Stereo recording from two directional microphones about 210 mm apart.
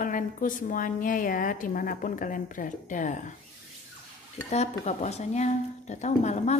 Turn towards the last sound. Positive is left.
turn(degrees=35)  # may be behind; listen again after turning